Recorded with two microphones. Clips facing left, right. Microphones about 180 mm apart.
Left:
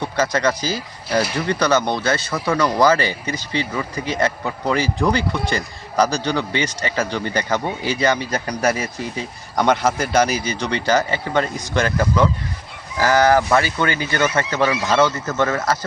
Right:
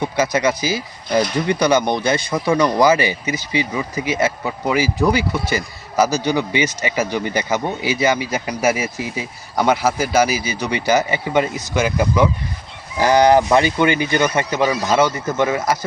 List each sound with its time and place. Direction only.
0.0 s speech: 10° right (ahead or behind)
1.2 s speech: 5° left (ahead or behind)
1.5 s speech: 10° right (ahead or behind)